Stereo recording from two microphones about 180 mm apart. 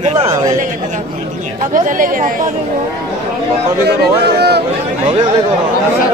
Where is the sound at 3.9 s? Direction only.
65° right (ahead or behind).